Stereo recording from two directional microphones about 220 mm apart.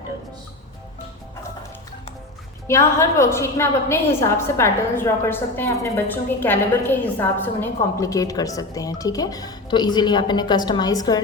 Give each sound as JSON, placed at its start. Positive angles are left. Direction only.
{"t": 2.6, "sound": "a woman's voice", "side_deg": 10}